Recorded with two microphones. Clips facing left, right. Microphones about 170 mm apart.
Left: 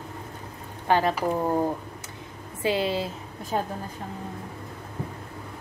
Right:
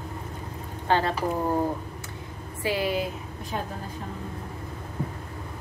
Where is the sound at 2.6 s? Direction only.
25° left (ahead or behind).